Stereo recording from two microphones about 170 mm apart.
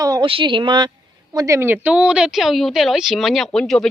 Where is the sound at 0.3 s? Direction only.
30° right (ahead or behind).